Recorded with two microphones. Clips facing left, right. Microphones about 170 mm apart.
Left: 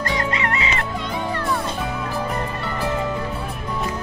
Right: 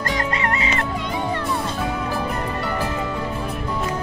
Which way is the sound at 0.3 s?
40° right (ahead or behind).